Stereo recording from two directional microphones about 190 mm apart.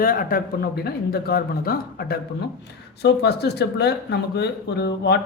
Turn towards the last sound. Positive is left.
turn(degrees=60)  # may be behind; listen again after turning